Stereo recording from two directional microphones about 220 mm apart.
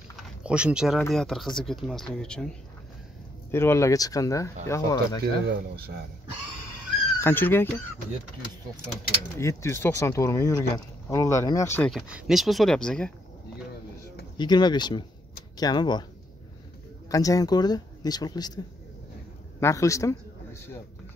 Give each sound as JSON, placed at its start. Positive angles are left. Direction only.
{"t": 0.4, "sound": "speech", "side_deg": -5}
{"t": 3.5, "sound": "speech", "side_deg": 10}
{"t": 7.2, "sound": "speech", "side_deg": 10}
{"t": 9.4, "sound": "speech", "side_deg": 15}
{"t": 11.9, "sound": "speech", "side_deg": -5}
{"t": 14.3, "sound": "speech", "side_deg": 20}
{"t": 17.1, "sound": "speech", "side_deg": 15}
{"t": 19.6, "sound": "a man's voice", "side_deg": 15}